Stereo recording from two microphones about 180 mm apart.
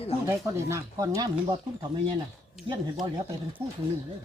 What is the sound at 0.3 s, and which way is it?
Speech, 15° right (ahead or behind).